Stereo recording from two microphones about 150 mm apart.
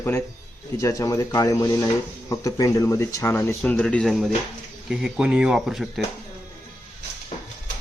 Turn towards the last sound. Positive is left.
turn(degrees=0)  # may be behind; listen again after turning